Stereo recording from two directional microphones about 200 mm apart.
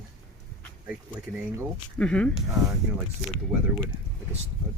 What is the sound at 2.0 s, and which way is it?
Speech, 5° left (ahead or behind).